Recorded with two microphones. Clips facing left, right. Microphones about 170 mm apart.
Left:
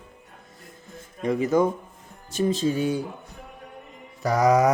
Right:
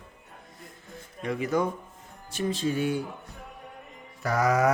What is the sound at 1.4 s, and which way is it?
Speech, 25° left (ahead or behind).